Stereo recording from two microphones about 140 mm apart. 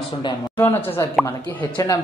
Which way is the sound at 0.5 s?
15° left (ahead or behind).